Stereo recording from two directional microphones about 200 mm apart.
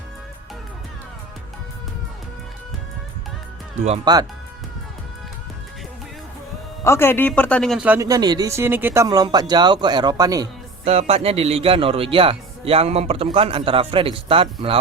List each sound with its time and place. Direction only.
3.8 s speech: 30° right (ahead or behind)
6.8 s a man's voice: 10° left (ahead or behind); by 10.5 s 20° right (ahead or behind)
10.8 s a man's voice: 30° right (ahead or behind)